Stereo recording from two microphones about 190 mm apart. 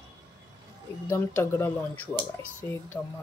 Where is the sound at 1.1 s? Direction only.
10° left (ahead or behind).